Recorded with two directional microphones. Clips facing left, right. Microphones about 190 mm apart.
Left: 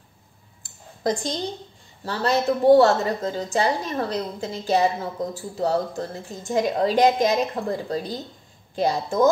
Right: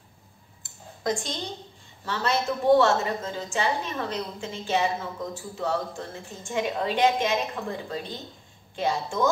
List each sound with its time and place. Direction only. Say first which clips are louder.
2.0 s a woman's voice: left 5 dB; 35° left (ahead or behind)